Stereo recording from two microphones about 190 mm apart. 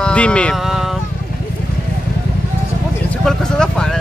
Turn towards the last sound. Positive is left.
turn(degrees=5)  # may be behind; listen again after turning